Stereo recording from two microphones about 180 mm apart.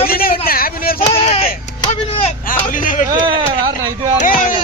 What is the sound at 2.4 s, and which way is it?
Speech, 45° left (ahead or behind).